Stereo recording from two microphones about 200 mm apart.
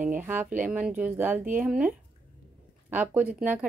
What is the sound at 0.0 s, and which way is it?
Speech, 10° right (ahead or behind).